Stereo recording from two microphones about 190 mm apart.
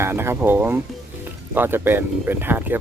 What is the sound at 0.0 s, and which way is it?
Speech, 10° right (ahead or behind).